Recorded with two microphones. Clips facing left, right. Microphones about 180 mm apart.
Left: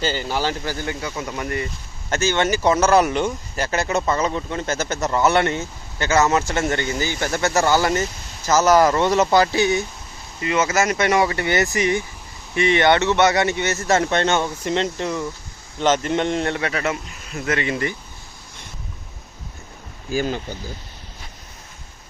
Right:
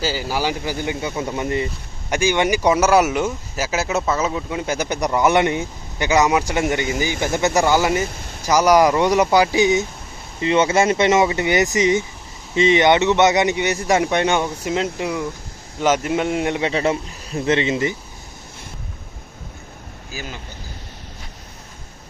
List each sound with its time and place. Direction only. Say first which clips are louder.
0.0 s speech: right 1 dB; 5° right (ahead or behind)
10.4 s a man's voice: right 4 dB; 30° right (ahead or behind)